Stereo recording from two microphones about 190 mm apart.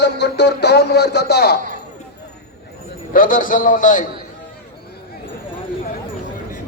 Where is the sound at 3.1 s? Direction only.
45° left (ahead or behind).